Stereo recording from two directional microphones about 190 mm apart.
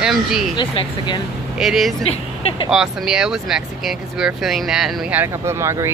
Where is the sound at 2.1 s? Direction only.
30° left (ahead or behind).